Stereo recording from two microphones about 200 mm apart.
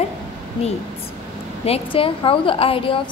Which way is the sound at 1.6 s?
30° left (ahead or behind).